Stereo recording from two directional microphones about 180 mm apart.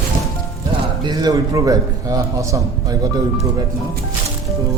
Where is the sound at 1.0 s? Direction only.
20° right (ahead or behind).